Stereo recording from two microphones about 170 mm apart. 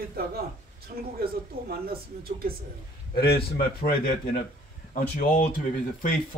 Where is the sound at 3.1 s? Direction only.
65° left (ahead or behind).